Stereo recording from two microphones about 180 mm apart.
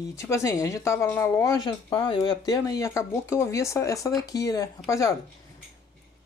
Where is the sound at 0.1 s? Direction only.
15° left (ahead or behind).